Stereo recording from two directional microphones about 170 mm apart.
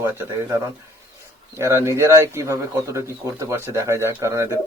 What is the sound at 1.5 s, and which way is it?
Speech, 15° right (ahead or behind).